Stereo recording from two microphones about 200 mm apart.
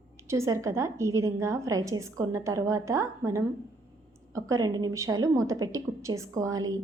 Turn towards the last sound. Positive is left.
turn(degrees=-15)  # may be behind; listen again after turning